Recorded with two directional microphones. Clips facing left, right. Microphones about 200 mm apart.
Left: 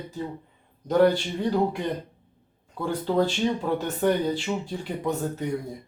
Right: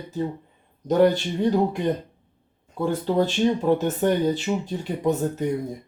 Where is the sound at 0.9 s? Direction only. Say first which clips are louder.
Right 2 dB; 20° right (ahead or behind).